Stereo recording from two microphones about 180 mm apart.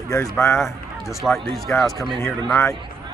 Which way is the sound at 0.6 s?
Centre (ahead or behind).